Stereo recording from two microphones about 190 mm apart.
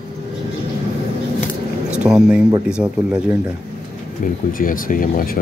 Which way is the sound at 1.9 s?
5° right (ahead or behind).